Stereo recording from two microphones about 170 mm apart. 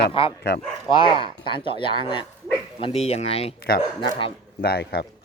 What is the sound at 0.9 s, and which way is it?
Speech, 30° left (ahead or behind).